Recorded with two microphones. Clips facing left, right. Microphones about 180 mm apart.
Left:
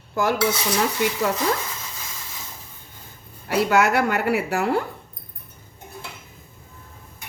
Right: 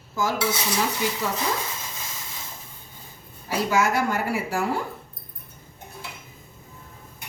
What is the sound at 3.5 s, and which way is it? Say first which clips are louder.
A woman's voice: left 4 dB; 65° left (ahead or behind).